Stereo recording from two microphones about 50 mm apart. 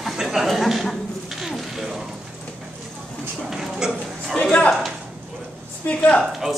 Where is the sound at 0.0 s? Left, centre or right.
Centre.